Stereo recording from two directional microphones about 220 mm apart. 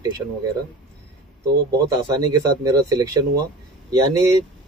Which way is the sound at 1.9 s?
15° right (ahead or behind).